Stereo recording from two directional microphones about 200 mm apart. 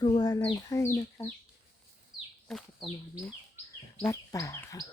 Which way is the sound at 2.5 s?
Centre (ahead or behind).